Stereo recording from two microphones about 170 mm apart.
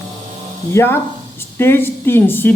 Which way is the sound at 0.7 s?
15° left (ahead or behind).